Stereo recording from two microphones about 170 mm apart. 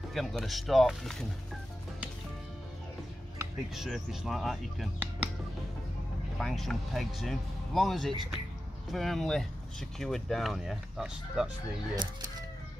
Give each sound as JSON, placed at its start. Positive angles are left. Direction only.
{"t": 0.1, "sound": "speech", "side_deg": 0}
{"t": 3.7, "sound": "speech", "side_deg": 0}
{"t": 6.4, "sound": "speech", "side_deg": 0}
{"t": 11.9, "sound": "speech", "side_deg": -25}